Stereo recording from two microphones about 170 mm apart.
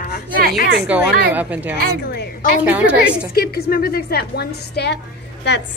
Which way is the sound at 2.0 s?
70° left (ahead or behind).